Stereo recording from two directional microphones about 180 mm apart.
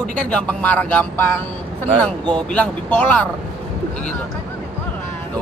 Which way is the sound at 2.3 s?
5° left (ahead or behind).